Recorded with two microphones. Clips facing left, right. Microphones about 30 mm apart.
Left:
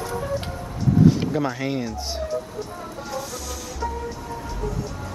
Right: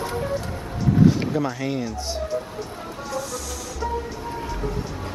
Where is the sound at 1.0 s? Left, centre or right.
Centre.